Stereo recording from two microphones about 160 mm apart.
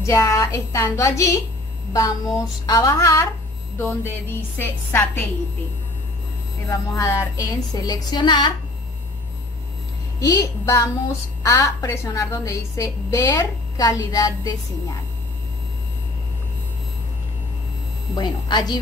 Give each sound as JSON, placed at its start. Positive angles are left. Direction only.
{"t": 0.0, "sound": "a woman's voice", "side_deg": 20}
{"t": 7.0, "sound": "speech", "side_deg": 20}
{"t": 10.4, "sound": "speech", "side_deg": 20}
{"t": 18.1, "sound": "speech", "side_deg": 25}